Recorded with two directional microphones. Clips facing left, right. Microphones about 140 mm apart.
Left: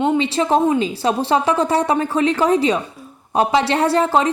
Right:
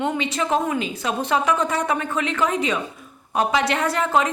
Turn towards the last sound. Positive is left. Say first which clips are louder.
# left 5 dB
turn(degrees=30)  # may be behind; listen again after turning